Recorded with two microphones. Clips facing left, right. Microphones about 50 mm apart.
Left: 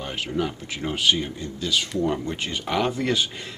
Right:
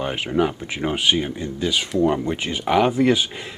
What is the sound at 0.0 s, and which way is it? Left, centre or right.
Speech, right.